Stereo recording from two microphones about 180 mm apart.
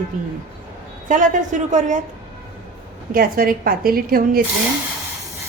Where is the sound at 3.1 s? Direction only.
55° right (ahead or behind).